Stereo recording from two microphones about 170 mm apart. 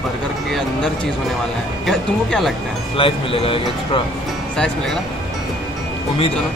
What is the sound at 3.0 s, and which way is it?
Speech, 30° left (ahead or behind).